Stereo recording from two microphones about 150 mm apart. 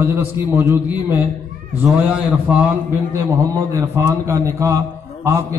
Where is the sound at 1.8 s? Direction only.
10° right (ahead or behind).